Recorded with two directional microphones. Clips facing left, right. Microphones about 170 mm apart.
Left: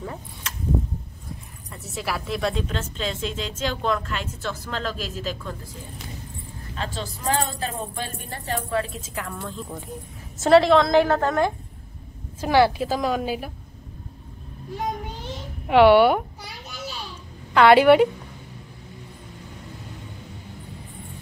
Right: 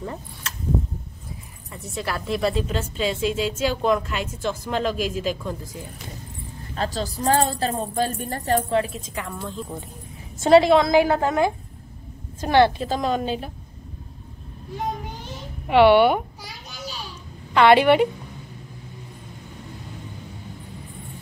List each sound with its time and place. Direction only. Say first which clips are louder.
1.7 s a woman's voice: right 1 dB; centre (ahead or behind)
6.7 s a woman's voice: right 5 dB; 40° right (ahead or behind)
8.9 s a woman's voice: right 1 dB; centre (ahead or behind)
12.4 s a woman's voice: right 1 dB; 5° left (ahead or behind)
15.7 s speech: even; 5° left (ahead or behind)
17.6 s speech: left 1 dB; 10° left (ahead or behind)